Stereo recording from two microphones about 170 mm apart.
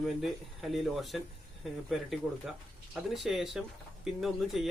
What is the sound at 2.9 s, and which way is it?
Speech, centre (ahead or behind).